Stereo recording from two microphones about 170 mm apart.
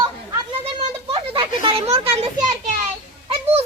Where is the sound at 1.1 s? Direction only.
35° right (ahead or behind).